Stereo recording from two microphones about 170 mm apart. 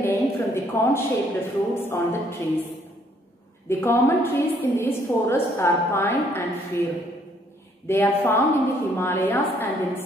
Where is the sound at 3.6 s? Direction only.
15° left (ahead or behind).